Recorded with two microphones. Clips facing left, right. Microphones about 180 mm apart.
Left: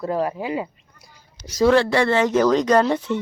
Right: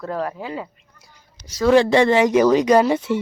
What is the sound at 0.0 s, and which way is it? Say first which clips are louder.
Speech: left 3 dB; 10° left (ahead or behind).